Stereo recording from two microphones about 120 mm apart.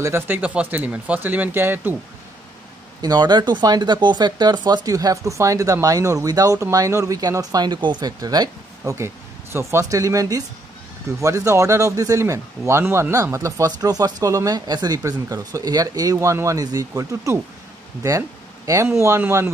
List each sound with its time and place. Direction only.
0.0 s speech: 20° right (ahead or behind)
3.0 s speech: 35° right (ahead or behind)
18.7 s speech: 25° right (ahead or behind)